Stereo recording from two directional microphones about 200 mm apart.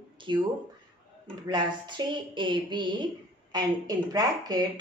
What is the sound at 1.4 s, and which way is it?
A woman's voice, 20° right (ahead or behind).